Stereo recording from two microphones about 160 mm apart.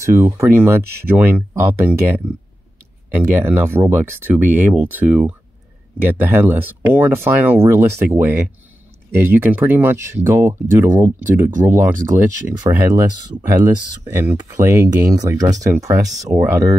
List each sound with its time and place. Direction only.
0.0 s speech: 15° right (ahead or behind)
3.4 s speech: 15° right (ahead or behind)